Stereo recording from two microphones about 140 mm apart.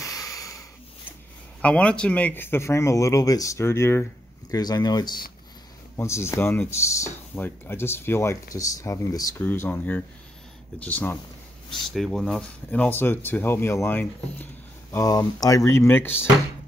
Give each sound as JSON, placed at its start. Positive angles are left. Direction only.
{"t": 0.0, "sound": "a sound", "side_deg": 25}
{"t": 1.6, "sound": "speech", "side_deg": 10}
{"t": 5.9, "sound": "speech", "side_deg": 20}
{"t": 11.9, "sound": "speech", "side_deg": 0}